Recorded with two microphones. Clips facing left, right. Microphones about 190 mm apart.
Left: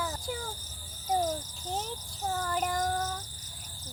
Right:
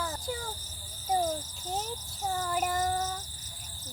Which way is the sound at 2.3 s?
5° right (ahead or behind).